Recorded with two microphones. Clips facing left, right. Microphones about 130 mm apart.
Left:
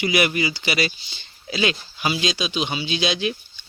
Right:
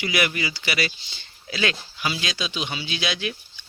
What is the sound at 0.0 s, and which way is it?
Speech, 20° left (ahead or behind).